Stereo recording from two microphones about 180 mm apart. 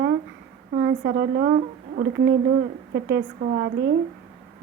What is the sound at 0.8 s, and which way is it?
A woman's voice, 70° right (ahead or behind).